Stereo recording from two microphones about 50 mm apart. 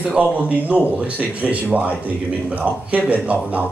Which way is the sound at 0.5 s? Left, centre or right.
Right.